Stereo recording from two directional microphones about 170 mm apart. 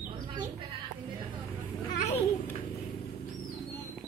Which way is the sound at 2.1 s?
15° left (ahead or behind).